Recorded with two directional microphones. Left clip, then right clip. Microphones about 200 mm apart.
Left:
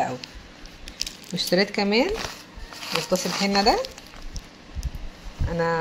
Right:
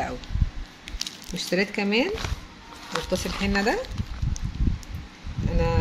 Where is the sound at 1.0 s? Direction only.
25° right (ahead or behind).